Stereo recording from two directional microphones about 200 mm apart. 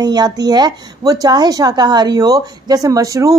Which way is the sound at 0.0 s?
20° right (ahead or behind).